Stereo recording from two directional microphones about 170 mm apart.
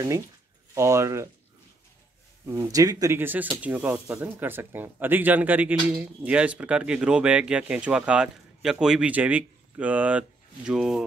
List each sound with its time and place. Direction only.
0.7 s speech: 15° right (ahead or behind)
2.4 s speech: 20° right (ahead or behind); by 11.1 s centre (ahead or behind)